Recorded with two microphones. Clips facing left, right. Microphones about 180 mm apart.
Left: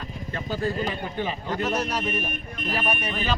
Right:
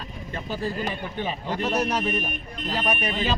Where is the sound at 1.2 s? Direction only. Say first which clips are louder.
Even; 35° right (ahead or behind).